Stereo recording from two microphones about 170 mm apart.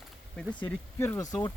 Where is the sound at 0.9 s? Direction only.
15° left (ahead or behind).